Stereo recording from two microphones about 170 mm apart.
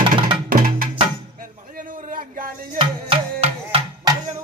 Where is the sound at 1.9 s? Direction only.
55° right (ahead or behind).